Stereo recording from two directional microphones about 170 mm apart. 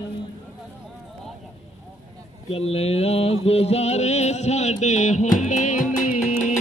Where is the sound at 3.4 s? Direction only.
35° left (ahead or behind).